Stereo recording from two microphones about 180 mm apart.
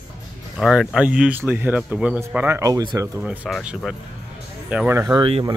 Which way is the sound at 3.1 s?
Centre (ahead or behind).